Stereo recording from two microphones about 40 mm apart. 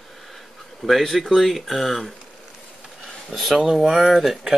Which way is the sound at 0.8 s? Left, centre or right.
Centre.